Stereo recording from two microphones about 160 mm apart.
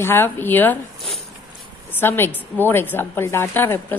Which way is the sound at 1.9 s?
15° left (ahead or behind).